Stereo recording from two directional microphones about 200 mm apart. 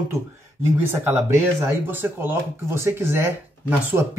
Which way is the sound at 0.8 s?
10° right (ahead or behind).